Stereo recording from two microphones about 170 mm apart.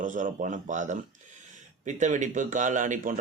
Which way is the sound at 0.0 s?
50° right (ahead or behind).